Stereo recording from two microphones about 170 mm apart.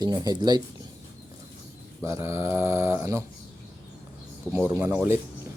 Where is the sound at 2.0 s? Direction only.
15° right (ahead or behind).